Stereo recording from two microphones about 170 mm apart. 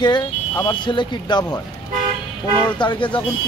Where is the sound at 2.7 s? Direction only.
30° left (ahead or behind).